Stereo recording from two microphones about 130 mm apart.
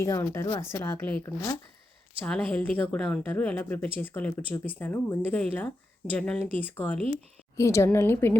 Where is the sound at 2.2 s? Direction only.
10° left (ahead or behind).